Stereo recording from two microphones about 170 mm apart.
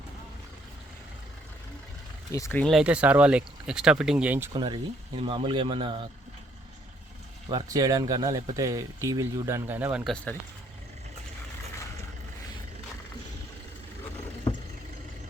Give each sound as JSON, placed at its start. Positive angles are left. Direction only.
{"t": 2.3, "sound": "speech", "side_deg": 15}
{"t": 2.7, "sound": "speech", "side_deg": -5}
{"t": 4.5, "sound": "speech", "side_deg": -25}
{"t": 7.5, "sound": "speech", "side_deg": -20}
{"t": 10.0, "sound": "speech", "side_deg": 0}